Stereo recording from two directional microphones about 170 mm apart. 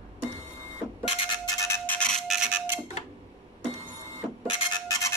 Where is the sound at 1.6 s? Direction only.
10° left (ahead or behind); by 2.8 s 10° right (ahead or behind).